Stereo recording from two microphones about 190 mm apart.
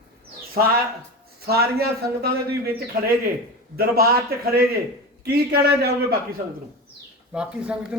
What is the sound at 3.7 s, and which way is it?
A man's voice, 55° right (ahead or behind).